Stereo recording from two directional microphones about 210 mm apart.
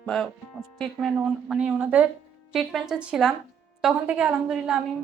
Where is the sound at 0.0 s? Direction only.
Centre (ahead or behind).